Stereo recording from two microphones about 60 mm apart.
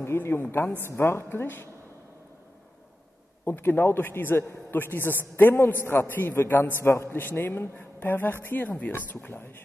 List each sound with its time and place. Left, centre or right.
0.0 s a woman's voice: left
3.4 s a man's voice: left